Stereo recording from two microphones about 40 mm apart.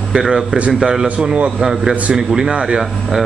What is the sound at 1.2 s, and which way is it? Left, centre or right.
Speech, right.